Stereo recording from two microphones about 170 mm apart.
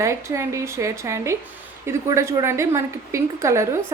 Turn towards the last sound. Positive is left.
turn(degrees=-15)  # may be behind; listen again after turning